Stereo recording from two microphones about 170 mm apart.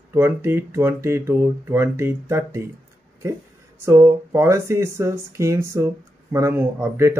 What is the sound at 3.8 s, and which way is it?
Speech, 15° right (ahead or behind).